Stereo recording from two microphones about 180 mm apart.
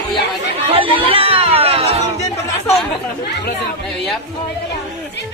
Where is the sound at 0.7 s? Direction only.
30° right (ahead or behind).